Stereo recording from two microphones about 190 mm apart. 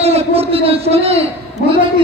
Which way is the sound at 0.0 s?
35° right (ahead or behind).